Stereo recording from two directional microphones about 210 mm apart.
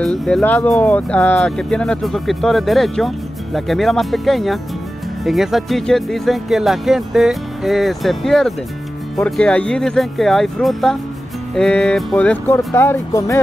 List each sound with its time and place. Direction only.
0.0 s speech: centre (ahead or behind)